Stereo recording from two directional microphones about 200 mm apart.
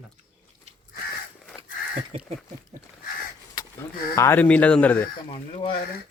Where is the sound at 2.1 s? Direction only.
30° right (ahead or behind).